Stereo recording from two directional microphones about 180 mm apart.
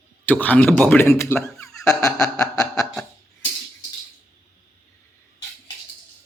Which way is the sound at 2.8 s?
5° left (ahead or behind).